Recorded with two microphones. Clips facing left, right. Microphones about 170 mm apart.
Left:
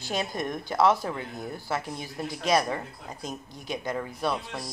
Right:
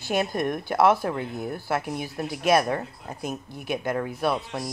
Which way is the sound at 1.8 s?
10° right (ahead or behind).